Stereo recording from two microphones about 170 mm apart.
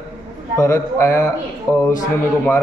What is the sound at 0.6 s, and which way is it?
A man's voice, 15° left (ahead or behind).